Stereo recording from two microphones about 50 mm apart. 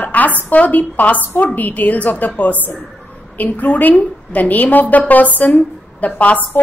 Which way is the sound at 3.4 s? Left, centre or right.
Left.